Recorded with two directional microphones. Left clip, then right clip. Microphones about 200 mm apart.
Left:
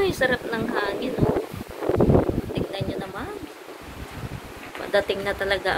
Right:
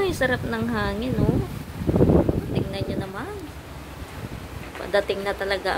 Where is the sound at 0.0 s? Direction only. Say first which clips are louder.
Left 1 dB; 5° right (ahead or behind).